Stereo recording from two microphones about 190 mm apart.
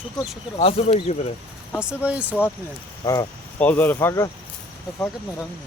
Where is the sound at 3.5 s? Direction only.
10° left (ahead or behind).